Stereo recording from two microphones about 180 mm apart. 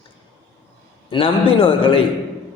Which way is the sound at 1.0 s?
30° left (ahead or behind).